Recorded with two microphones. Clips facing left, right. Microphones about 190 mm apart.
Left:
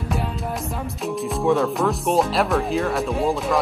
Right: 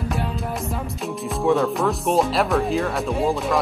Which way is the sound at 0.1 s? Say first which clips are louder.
Even; centre (ahead or behind).